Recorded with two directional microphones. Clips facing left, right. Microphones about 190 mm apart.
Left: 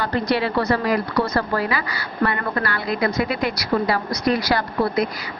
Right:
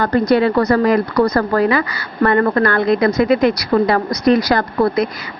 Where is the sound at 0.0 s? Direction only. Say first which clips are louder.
Right 8 dB; 45° right (ahead or behind).